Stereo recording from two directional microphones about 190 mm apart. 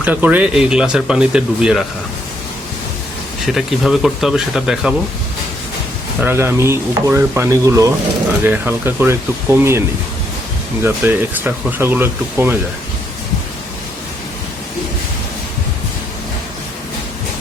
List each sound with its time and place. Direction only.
0.0 s speech: 10° right (ahead or behind)
3.4 s speech: centre (ahead or behind)
6.2 s speech: 15° right (ahead or behind)
10.8 s speech: 10° right (ahead or behind)